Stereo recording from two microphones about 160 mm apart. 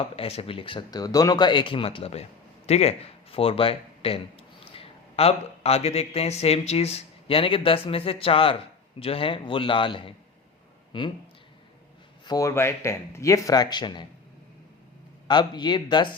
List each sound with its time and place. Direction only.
0.0 s speech: 35° left (ahead or behind)
12.2 s speech: 20° left (ahead or behind)
15.3 s speech: 25° left (ahead or behind)